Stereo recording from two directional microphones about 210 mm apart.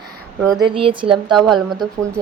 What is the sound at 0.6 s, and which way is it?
Speech, 25° right (ahead or behind).